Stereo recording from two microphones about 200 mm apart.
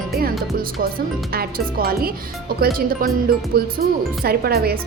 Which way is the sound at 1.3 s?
50° right (ahead or behind).